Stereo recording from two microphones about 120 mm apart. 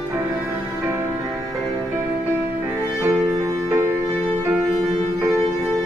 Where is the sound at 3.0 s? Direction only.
25° right (ahead or behind).